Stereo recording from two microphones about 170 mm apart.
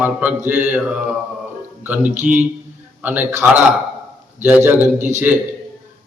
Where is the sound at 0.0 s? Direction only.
10° right (ahead or behind).